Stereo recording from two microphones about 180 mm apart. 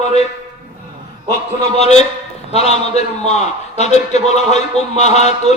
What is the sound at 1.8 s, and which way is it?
A man's voice, 35° left (ahead or behind).